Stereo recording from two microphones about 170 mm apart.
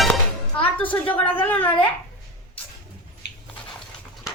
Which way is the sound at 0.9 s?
10° left (ahead or behind).